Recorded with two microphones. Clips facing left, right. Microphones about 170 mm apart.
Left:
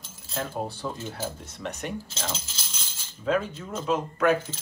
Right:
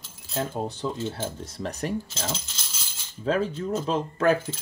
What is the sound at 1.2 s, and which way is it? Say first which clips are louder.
Speech: right 2 dB; 35° right (ahead or behind).